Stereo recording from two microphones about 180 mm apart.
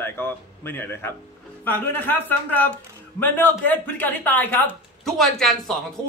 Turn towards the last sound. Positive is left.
turn(degrees=0)  # may be behind; listen again after turning